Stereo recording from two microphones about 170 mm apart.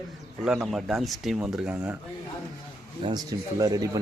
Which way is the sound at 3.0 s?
20° right (ahead or behind).